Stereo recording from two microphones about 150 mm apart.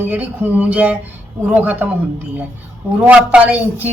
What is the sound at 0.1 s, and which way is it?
Speech, 10° right (ahead or behind).